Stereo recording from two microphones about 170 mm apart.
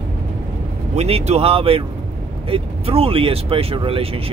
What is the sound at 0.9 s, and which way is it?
Speech, 35° right (ahead or behind).